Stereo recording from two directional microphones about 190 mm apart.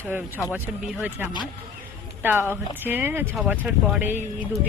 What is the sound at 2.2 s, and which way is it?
Speech, 10° right (ahead or behind).